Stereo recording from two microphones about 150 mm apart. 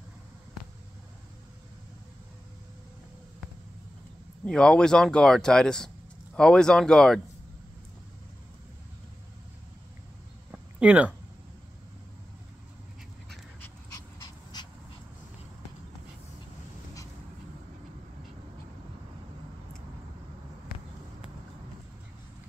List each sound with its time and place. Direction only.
4.5 s speech: 5° left (ahead or behind)
10.5 s a sound: 10° right (ahead or behind)
14.5 s dog: 25° left (ahead or behind)